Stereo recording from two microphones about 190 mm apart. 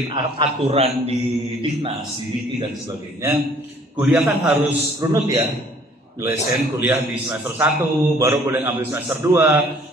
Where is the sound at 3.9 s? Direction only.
10° right (ahead or behind).